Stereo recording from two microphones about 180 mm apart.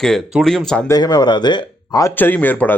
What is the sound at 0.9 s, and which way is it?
Speech, 20° left (ahead or behind).